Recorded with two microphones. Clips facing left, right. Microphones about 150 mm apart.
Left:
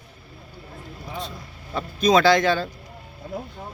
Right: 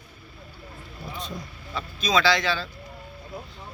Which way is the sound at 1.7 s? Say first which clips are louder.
Left 7 dB; 50° left (ahead or behind).